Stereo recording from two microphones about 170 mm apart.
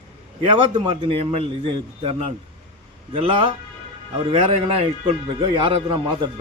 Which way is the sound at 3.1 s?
35° right (ahead or behind).